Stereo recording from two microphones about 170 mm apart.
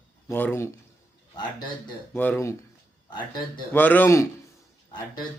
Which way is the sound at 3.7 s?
10° left (ahead or behind).